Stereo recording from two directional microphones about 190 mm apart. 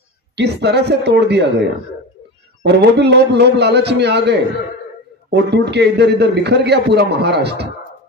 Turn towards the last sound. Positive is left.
turn(degrees=-60)  # may be behind; listen again after turning